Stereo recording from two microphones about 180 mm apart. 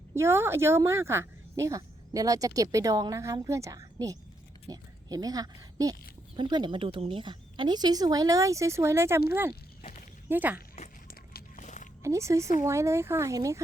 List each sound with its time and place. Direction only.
0.1 s speech: 15° right (ahead or behind)
11.1 s a sound: 50° left (ahead or behind)
12.0 s speech: 15° right (ahead or behind)